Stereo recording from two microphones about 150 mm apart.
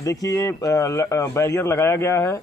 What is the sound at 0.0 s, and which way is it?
Speech, 20° left (ahead or behind).